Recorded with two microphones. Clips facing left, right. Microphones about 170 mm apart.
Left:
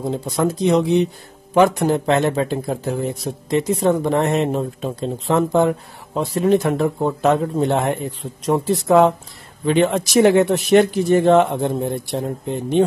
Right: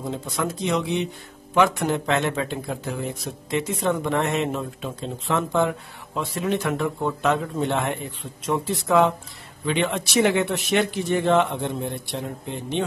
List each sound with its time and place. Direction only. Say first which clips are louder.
0.0 s speech: left 7 dB; 35° left (ahead or behind)